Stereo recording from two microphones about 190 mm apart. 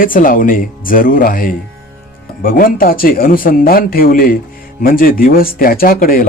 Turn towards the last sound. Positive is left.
turn(degrees=50)  # may be behind; listen again after turning